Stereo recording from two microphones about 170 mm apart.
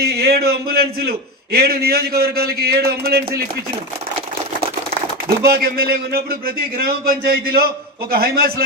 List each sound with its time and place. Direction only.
0.0 s a man's voice: 65° right (ahead or behind)
5.4 s a man's voice: 60° right (ahead or behind)